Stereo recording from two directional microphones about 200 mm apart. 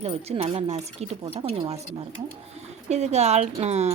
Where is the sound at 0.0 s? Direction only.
30° right (ahead or behind).